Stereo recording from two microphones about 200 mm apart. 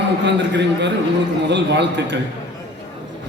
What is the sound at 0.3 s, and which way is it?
A man's voice, 60° right (ahead or behind).